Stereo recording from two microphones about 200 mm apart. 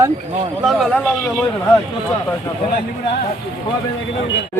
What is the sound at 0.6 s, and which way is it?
Speech, centre (ahead or behind).